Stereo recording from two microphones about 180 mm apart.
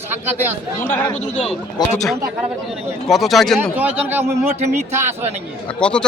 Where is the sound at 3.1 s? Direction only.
Centre (ahead or behind).